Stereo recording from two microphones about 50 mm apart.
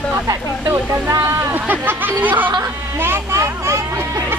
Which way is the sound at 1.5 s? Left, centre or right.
Right.